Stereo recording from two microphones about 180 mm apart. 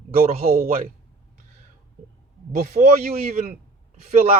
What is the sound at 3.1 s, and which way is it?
Speech, 35° right (ahead or behind).